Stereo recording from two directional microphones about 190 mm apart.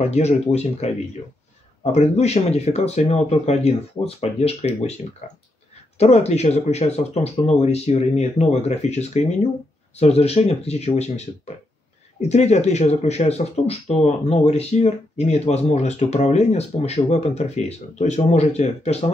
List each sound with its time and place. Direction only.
0.0 s speech: 35° left (ahead or behind)
5.9 s speech: 35° left (ahead or behind)